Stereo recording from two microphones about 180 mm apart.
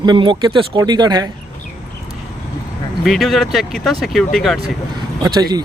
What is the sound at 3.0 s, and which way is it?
Speech, centre (ahead or behind).